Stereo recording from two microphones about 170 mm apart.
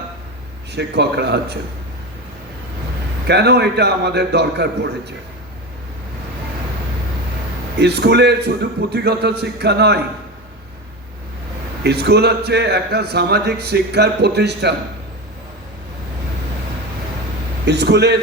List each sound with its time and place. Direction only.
0.7 s a man's voice: 80° right
3.2 s a man's voice: 75° right (ahead or behind)
7.8 s a man's voice: 75° right (ahead or behind)
11.8 s a man's voice: 75° right (ahead or behind)
17.7 s a man's voice: 85° right